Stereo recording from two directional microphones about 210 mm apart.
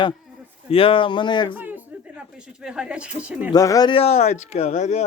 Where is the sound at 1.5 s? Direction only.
10° right (ahead or behind).